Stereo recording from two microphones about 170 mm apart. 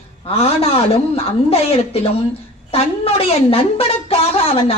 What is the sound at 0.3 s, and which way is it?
A woman's voice, 35° left (ahead or behind).